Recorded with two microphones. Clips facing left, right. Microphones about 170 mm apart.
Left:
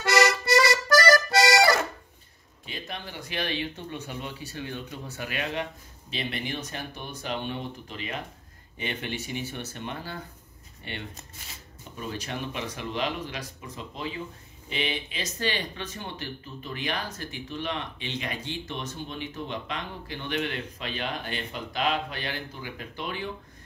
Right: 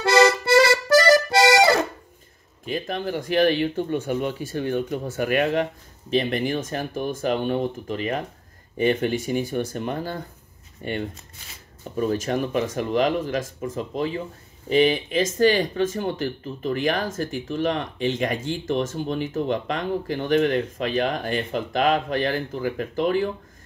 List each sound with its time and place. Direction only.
0.0 s accordion: 30° right (ahead or behind)
2.6 s speech: 50° right (ahead or behind)